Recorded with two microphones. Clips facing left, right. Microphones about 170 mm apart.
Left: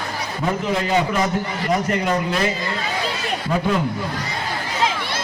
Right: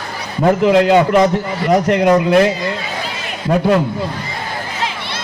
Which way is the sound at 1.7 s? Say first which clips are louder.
Right 9 dB; 60° right (ahead or behind).